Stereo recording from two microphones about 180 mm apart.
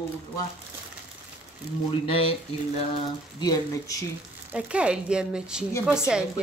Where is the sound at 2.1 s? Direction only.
30° left (ahead or behind).